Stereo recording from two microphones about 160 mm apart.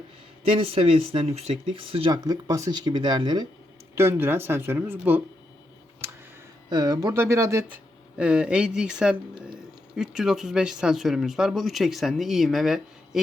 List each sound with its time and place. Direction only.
0.4 s speech: 35° right (ahead or behind)
3.9 s speech: 15° right (ahead or behind)
6.7 s speech: 25° right (ahead or behind)
8.2 s speech: 5° right (ahead or behind)